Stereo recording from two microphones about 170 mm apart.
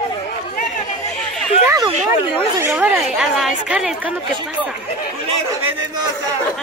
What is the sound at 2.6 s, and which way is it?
Speech, 10° right (ahead or behind).